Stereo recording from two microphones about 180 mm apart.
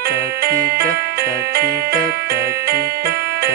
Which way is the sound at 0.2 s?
60° right (ahead or behind).